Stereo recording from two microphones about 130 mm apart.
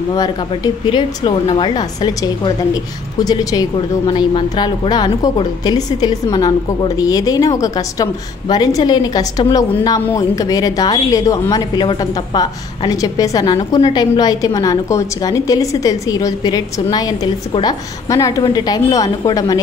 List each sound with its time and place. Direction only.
0.5 s a woman's voice: 40° left (ahead or behind)
4.1 s a woman's voice: 40° left (ahead or behind)